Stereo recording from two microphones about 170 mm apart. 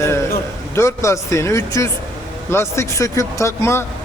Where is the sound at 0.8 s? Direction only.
15° left (ahead or behind).